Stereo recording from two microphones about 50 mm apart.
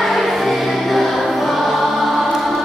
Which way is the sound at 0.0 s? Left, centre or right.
Centre.